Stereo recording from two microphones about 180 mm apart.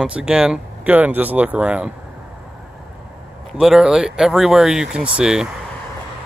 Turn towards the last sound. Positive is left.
turn(degrees=-5)  # may be behind; listen again after turning